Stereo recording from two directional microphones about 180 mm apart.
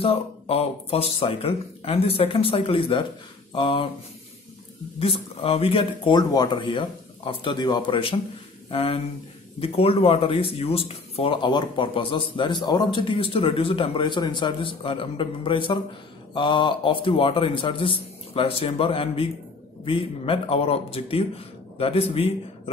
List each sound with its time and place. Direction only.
0.0 s speech: 30° left (ahead or behind)
5.0 s speech: 30° left (ahead or behind)